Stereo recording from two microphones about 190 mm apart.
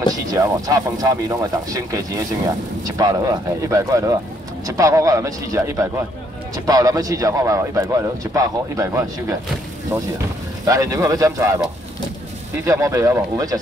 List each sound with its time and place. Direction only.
0.1 s a man's voice: 20° right (ahead or behind)
10.6 s a man's voice: 20° right (ahead or behind)
12.6 s a man's voice: 15° right (ahead or behind)